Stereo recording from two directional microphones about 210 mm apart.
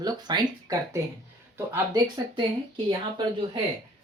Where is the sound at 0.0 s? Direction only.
20° right (ahead or behind).